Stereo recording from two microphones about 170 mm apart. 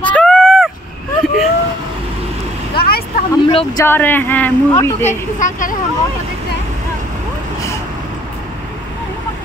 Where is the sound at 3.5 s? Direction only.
30° left (ahead or behind).